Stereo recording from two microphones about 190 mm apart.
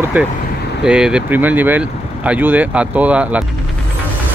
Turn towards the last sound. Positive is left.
turn(degrees=-5)  # may be behind; listen again after turning